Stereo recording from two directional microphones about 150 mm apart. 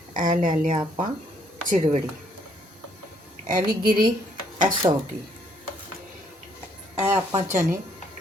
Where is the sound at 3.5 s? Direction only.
85° right.